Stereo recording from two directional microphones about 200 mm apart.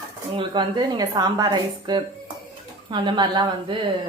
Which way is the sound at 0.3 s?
20° right (ahead or behind).